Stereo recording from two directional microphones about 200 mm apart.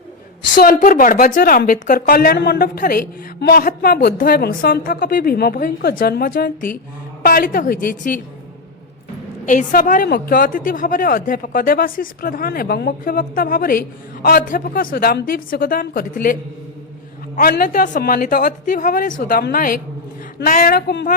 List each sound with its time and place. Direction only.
0.5 s a woman's voice: 45° left (ahead or behind)
9.5 s a woman's voice: 40° left (ahead or behind)